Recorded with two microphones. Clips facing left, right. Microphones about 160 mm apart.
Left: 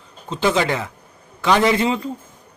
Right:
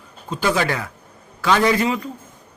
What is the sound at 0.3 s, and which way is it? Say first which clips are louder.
A man's voice: left 2 dB; 25° left (ahead or behind).